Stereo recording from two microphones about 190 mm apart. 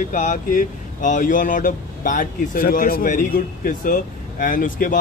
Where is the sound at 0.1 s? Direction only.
40° left (ahead or behind).